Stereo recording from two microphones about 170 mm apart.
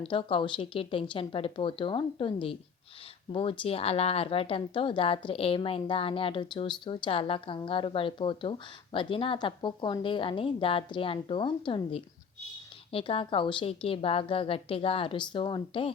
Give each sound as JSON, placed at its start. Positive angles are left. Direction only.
{"t": 0.0, "sound": "a woman's voice", "side_deg": 30}